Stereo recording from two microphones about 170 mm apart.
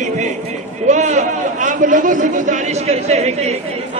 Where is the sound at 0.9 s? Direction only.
45° right (ahead or behind).